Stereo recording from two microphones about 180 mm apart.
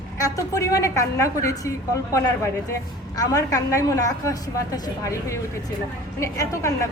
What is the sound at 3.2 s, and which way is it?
A woman's voice, 20° left (ahead or behind).